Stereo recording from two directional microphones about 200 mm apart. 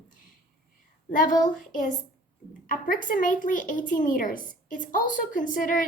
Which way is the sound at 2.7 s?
45° left (ahead or behind).